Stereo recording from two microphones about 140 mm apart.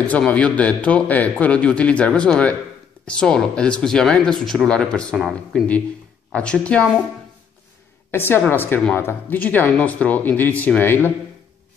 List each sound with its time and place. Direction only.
0.1 s a man's voice: 10° left (ahead or behind)
6.3 s a man's voice: 10° left (ahead or behind)
8.1 s a man's voice: 15° left (ahead or behind)